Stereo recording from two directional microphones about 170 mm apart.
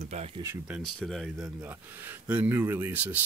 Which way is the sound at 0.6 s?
Centre (ahead or behind).